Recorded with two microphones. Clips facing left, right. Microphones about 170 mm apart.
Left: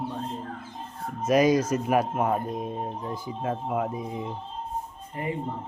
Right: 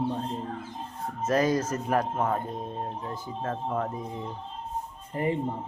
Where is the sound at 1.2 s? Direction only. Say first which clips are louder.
Left 4 dB; 15° left (ahead or behind).